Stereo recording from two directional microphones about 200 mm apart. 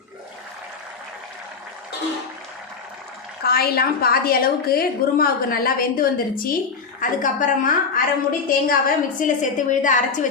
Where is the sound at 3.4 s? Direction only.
50° left (ahead or behind).